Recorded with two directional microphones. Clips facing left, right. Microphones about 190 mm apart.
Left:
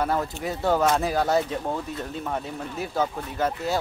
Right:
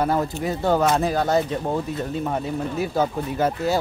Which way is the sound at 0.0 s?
5° right (ahead or behind).